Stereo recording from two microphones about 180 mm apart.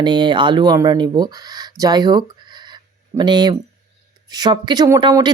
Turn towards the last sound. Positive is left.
turn(degrees=-25)  # may be behind; listen again after turning